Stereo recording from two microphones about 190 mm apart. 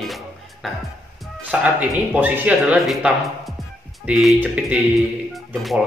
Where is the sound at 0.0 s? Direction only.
Centre (ahead or behind).